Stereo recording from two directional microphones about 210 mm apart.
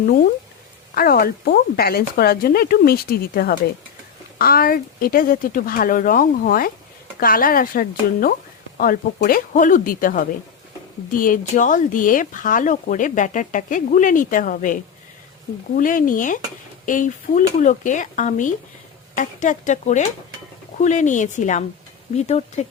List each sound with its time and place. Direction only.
0.9 s speech: 45° left (ahead or behind)